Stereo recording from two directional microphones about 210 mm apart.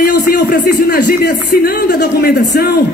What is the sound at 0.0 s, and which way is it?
A man's voice, 45° left (ahead or behind).